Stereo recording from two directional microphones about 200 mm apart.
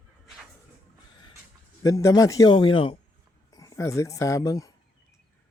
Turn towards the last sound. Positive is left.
turn(degrees=15)  # may be behind; listen again after turning